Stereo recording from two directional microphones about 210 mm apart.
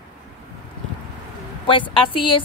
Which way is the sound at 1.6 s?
25° left (ahead or behind).